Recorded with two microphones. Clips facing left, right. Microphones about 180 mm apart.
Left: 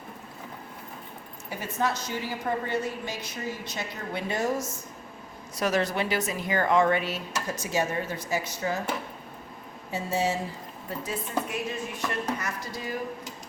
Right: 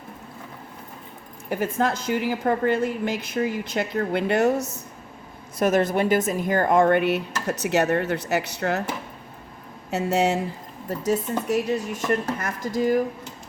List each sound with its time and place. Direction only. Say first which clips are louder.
1.5 s speech: right 11 dB; 55° right (ahead or behind)
2.1 s speech: right 9 dB; 70° right (ahead or behind)
2.4 s a woman's voice: right 5 dB; 55° right (ahead or behind)
5.5 s speech: right 6 dB; 50° right (ahead or behind); by 8.8 s 70° right (ahead or behind)
9.9 s speech: right 6 dB; 70° right (ahead or behind)
10.8 s speech: right 10 dB; 40° right (ahead or behind)